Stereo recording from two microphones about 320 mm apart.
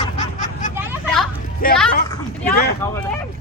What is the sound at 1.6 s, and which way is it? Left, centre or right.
Speech, left.